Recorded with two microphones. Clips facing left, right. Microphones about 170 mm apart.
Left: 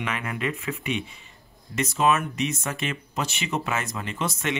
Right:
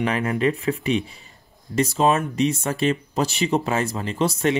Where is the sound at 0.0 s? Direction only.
35° right (ahead or behind).